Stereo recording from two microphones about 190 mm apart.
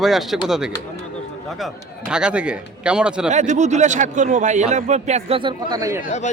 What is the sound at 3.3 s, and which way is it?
A man's voice, 40° right (ahead or behind).